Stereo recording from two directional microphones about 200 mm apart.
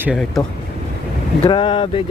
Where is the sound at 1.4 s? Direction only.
25° left (ahead or behind).